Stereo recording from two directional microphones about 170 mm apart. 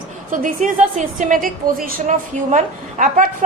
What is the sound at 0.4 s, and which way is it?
A woman's voice, 45° right (ahead or behind).